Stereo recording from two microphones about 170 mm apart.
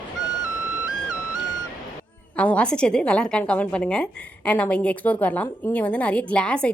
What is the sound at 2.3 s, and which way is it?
A woman's voice, 5° left (ahead or behind).